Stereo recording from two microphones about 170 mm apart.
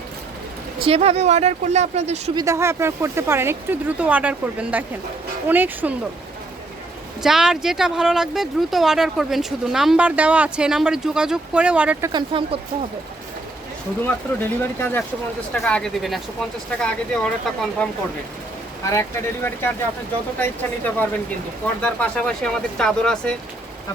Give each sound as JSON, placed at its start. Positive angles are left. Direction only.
{"t": 0.9, "sound": "speech", "side_deg": -35}
{"t": 2.3, "sound": "speech", "side_deg": -20}
{"t": 7.2, "sound": "speech", "side_deg": -5}
{"t": 12.3, "sound": "speech", "side_deg": -30}
{"t": 14.0, "sound": "speech", "side_deg": 15}
{"t": 18.9, "sound": "speech", "side_deg": 15}